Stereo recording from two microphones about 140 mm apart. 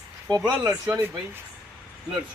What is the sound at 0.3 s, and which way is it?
Speech, 25° right (ahead or behind).